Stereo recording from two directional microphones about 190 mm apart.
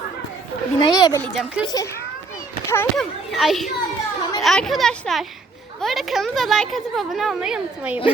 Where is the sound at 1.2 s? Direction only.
5° right (ahead or behind).